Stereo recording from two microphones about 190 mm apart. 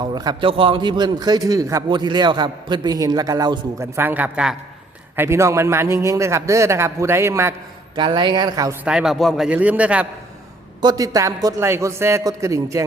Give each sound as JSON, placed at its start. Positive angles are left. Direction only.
{"t": 0.0, "sound": "a man's voice", "side_deg": -20}
{"t": 8.9, "sound": "a man's voice", "side_deg": 0}
{"t": 10.8, "sound": "a man's voice", "side_deg": -20}